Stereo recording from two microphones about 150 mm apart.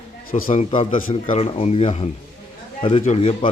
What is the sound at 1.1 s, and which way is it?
Speech, 40° left (ahead or behind).